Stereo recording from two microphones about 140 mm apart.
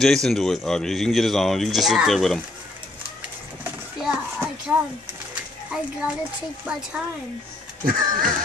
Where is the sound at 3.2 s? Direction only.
10° right (ahead or behind).